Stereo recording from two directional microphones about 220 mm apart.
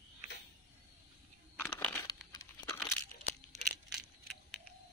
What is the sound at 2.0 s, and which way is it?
Tearing, 15° left (ahead or behind).